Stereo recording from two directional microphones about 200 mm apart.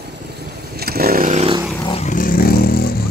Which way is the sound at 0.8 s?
50° right (ahead or behind).